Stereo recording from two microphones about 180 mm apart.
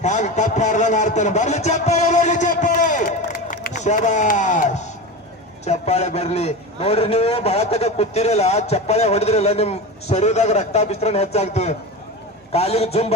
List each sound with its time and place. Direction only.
0.0 s a man's voice: 40° left (ahead or behind)